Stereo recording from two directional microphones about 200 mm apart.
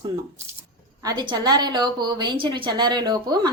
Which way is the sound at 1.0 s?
20° right (ahead or behind).